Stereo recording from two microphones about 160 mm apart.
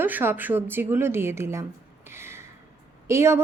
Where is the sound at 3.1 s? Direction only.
15° right (ahead or behind).